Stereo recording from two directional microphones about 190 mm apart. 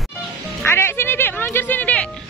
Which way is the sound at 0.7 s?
10° left (ahead or behind).